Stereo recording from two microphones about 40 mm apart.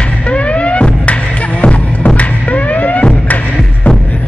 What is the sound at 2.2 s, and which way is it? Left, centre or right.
Music, left.